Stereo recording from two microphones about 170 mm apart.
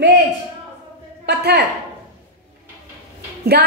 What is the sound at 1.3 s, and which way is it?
Speech, 75° right (ahead or behind).